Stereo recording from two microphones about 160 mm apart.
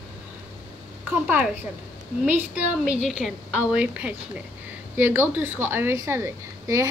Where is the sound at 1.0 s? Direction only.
10° right (ahead or behind).